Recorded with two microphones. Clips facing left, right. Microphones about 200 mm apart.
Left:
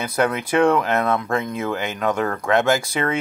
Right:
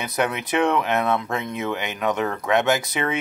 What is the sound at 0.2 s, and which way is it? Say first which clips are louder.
Speech: left 4 dB; 20° right (ahead or behind).